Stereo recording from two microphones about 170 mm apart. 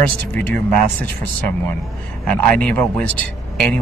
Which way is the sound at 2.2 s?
5° left (ahead or behind).